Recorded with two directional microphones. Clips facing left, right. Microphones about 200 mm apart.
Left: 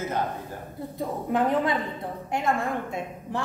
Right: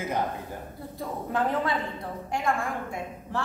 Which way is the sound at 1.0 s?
20° left (ahead or behind).